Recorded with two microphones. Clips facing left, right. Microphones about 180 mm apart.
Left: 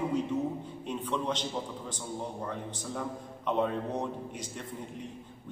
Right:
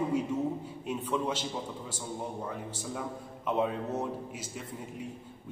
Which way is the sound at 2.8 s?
5° right (ahead or behind).